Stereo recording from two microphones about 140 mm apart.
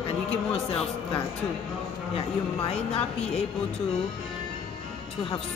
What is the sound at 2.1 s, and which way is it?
Speech, 45° left (ahead or behind).